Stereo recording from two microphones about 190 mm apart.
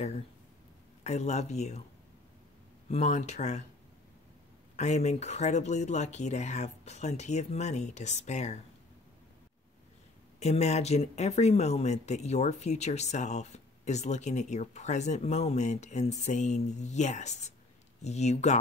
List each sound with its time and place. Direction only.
1.0 s speech: 35° left (ahead or behind)
2.9 s speech: 40° left (ahead or behind)
4.7 s speech: 35° left (ahead or behind)
10.4 s speech: 35° left (ahead or behind)